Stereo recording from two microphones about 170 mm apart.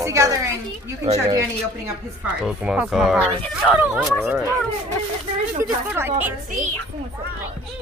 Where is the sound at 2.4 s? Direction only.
5° right (ahead or behind).